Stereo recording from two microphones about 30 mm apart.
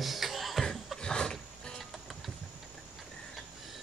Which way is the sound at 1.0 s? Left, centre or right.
Left.